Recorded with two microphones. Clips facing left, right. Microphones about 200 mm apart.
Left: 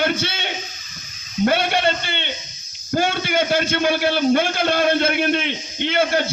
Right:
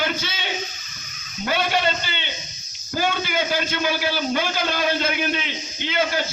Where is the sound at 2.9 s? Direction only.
55° left (ahead or behind).